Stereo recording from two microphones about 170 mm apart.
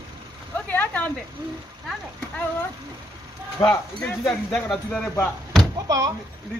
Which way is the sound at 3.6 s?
10° left (ahead or behind).